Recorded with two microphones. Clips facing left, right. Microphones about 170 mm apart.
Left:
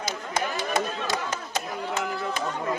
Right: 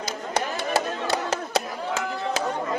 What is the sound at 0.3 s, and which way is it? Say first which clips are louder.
Clapping: right 2 dB; 65° right (ahead or behind).